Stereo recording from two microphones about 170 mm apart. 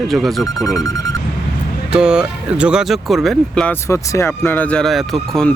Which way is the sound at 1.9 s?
5° right (ahead or behind).